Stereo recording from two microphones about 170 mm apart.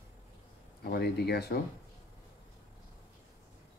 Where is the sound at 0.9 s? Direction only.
75° left (ahead or behind).